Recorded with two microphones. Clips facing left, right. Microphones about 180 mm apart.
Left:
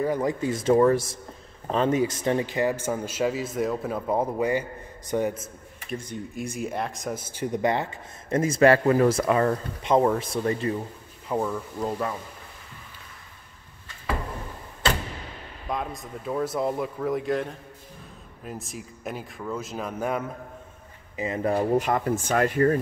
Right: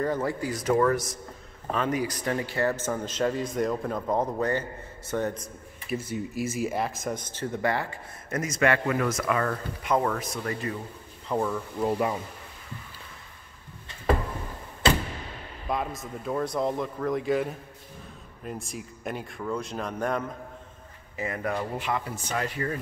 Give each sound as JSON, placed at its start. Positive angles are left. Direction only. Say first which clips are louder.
{"t": 0.0, "sound": "a man's voice", "louder": "left 3 dB", "side_deg": 15}
{"t": 5.9, "sound": "speech", "louder": "right 2 dB", "side_deg": -5}
{"t": 11.2, "sound": "a man's voice", "louder": "left 1 dB", "side_deg": 5}
{"t": 11.8, "sound": "speech", "louder": "right 3 dB", "side_deg": -15}
{"t": 15.7, "sound": "speech", "louder": "right 1 dB", "side_deg": 0}
{"t": 21.2, "sound": "speech", "louder": "left 5 dB", "side_deg": 25}